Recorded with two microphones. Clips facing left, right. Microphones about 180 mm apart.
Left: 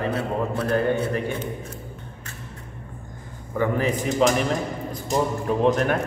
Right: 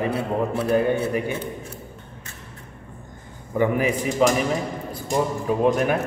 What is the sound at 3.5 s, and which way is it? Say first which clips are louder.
Speech: right 2 dB; 15° right (ahead or behind).